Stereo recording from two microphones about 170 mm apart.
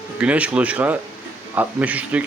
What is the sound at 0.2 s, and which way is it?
A man's voice, 5° right (ahead or behind).